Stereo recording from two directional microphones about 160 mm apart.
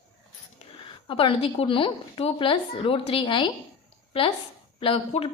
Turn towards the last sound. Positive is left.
turn(degrees=35)  # may be behind; listen again after turning